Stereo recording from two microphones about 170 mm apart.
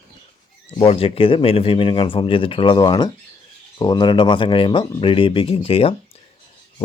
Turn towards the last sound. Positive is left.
turn(degrees=35)  # may be behind; listen again after turning